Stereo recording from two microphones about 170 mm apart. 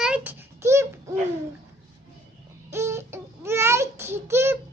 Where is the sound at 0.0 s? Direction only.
10° right (ahead or behind).